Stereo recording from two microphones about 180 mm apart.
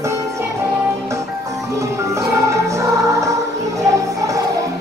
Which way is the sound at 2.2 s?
15° right (ahead or behind).